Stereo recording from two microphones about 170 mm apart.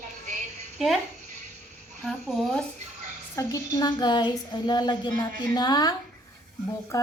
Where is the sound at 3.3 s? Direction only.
20° left (ahead or behind).